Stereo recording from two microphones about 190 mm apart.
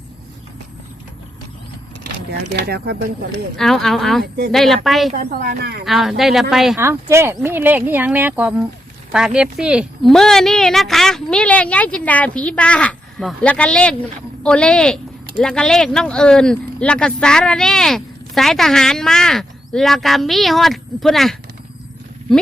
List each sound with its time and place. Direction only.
2.3 s speech: 55° right (ahead or behind)
3.6 s speech: centre (ahead or behind)
4.2 s speech: 55° right (ahead or behind)
4.5 s speech: centre (ahead or behind)
5.1 s a woman's voice: 50° right (ahead or behind)
5.8 s speech: centre (ahead or behind)
6.7 s speech: 15° right (ahead or behind)